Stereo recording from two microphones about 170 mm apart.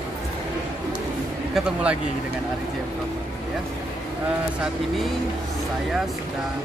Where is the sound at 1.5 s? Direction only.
5° right (ahead or behind).